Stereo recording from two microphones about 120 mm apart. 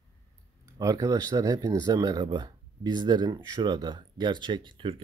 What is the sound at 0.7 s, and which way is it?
Speech, 30° right (ahead or behind).